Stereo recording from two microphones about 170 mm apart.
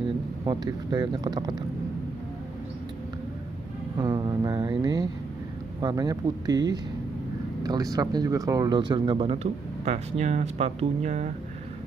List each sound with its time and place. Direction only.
0.5 s speech: 25° right (ahead or behind)
4.0 s speech: 25° right (ahead or behind); by 11.3 s 45° right (ahead or behind)